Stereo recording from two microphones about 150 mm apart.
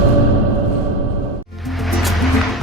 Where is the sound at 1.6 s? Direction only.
Centre (ahead or behind).